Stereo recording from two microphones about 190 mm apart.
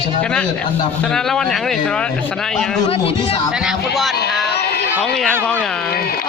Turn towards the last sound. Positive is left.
turn(degrees=5)  # may be behind; listen again after turning